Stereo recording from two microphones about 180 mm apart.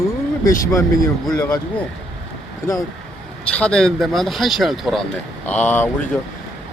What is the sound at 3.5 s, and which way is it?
Speech, 5° left (ahead or behind).